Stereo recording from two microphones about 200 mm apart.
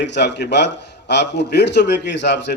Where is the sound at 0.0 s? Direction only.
60° left (ahead or behind).